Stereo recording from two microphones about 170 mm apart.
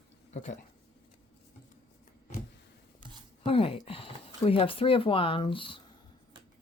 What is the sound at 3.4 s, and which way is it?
Speech, 35° left (ahead or behind).